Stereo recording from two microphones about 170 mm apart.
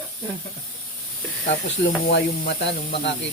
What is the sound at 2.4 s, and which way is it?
Speech, 75° left (ahead or behind).